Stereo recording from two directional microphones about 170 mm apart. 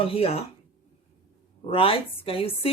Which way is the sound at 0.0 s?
35° left (ahead or behind).